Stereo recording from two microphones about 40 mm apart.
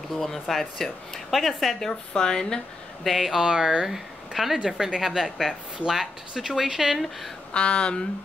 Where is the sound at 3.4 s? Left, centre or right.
Centre.